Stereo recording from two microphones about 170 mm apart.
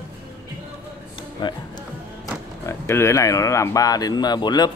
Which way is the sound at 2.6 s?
15° left (ahead or behind).